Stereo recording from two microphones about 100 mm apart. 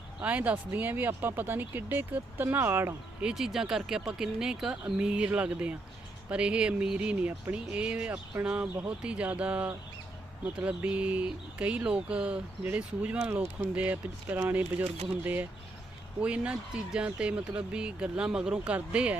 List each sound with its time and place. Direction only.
0.2 s speech: 15° right (ahead or behind)
3.2 s speech: 5° right (ahead or behind)
13.3 s speech: 25° right (ahead or behind)
13.7 s speech: 15° right (ahead or behind)